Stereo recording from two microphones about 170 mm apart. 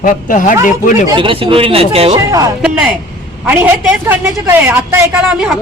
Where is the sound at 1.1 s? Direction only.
30° right (ahead or behind).